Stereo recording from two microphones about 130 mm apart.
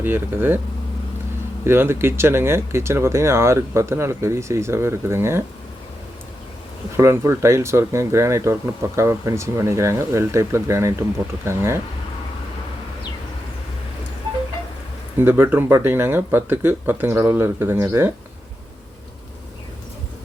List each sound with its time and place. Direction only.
0.0 s speech: 15° right (ahead or behind)
1.6 s speech: 20° right (ahead or behind)
6.9 s speech: 20° right (ahead or behind)
15.2 s speech: 15° right (ahead or behind)